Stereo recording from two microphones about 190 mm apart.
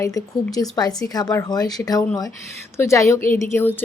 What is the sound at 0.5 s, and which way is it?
A woman's voice, 20° left (ahead or behind).